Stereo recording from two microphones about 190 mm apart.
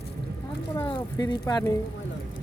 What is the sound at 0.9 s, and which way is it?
Speech, 25° left (ahead or behind).